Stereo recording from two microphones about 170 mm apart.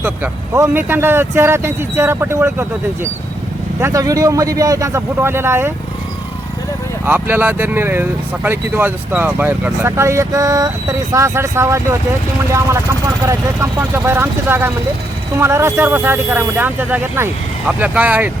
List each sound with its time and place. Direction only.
0.0 s speech: 15° right (ahead or behind)
7.0 s speech: 10° right (ahead or behind)